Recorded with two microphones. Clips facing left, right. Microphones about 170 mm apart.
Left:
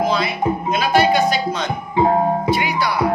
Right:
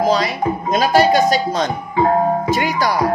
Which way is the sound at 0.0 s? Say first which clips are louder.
Right 3 dB; 40° right (ahead or behind).